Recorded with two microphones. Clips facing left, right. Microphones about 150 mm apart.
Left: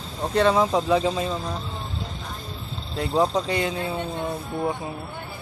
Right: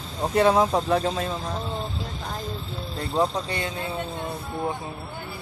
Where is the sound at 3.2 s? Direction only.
20° left (ahead or behind).